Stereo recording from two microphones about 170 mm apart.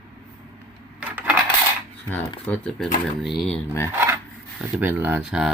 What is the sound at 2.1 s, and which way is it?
Speech, 10° left (ahead or behind).